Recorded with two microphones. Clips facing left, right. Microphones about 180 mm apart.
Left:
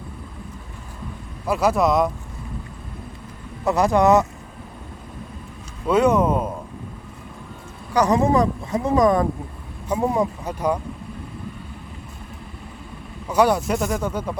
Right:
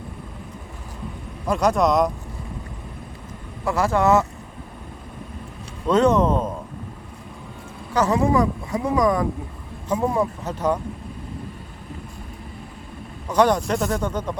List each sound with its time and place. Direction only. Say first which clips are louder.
1.5 s speech: even; 5° left (ahead or behind)
3.6 s speech: left 3 dB; 20° left (ahead or behind)
5.9 s speech: even; 10° left (ahead or behind)
7.9 s speech: left 1 dB; 20° left (ahead or behind)
9.9 s speech: left 1 dB; 15° left (ahead or behind)
13.2 s speech: even; 10° left (ahead or behind)